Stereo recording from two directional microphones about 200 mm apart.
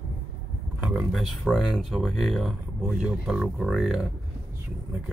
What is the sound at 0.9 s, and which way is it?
Speech, centre (ahead or behind).